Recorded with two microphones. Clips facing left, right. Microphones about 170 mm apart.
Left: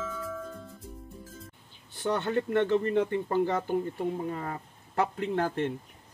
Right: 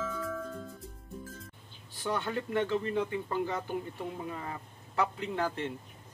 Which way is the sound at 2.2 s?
55° left (ahead or behind).